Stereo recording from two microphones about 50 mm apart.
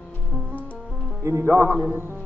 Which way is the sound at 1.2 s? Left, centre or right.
Right.